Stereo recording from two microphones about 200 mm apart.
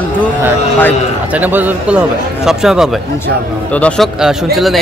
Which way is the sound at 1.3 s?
10° right (ahead or behind).